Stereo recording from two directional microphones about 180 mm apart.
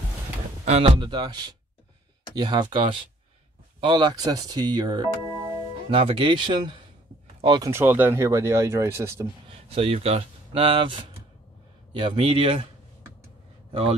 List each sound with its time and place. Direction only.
0.7 s speech: 35° right (ahead or behind); by 9.3 s 15° right (ahead or behind)
9.5 s speech: 30° right (ahead or behind)